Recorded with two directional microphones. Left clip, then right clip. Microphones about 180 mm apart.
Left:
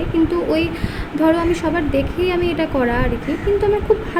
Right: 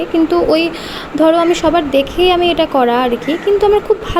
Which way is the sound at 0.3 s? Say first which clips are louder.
Right 7 dB; 10° right (ahead or behind).